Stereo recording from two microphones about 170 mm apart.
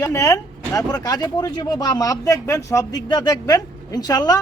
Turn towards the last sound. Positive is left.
turn(degrees=25)  # may be behind; listen again after turning